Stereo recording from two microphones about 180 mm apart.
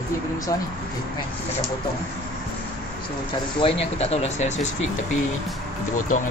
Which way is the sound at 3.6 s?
30° left (ahead or behind).